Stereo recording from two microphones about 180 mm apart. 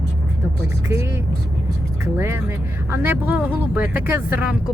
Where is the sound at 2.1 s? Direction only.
15° right (ahead or behind).